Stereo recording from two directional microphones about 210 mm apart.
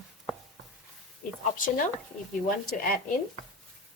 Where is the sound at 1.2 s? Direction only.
40° left (ahead or behind).